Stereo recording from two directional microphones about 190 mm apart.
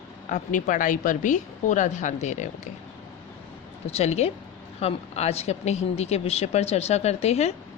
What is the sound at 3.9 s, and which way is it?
Speech, 35° left (ahead or behind).